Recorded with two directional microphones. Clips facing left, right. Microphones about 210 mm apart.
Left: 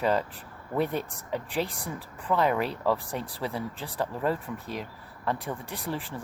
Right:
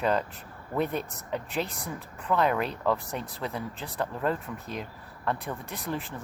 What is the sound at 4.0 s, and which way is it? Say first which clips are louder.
Speech: left 1 dB; 10° left (ahead or behind).